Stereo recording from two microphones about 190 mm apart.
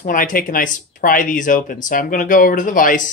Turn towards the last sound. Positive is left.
turn(degrees=45)  # may be behind; listen again after turning